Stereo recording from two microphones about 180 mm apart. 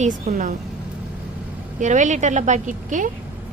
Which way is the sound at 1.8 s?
45° right (ahead or behind).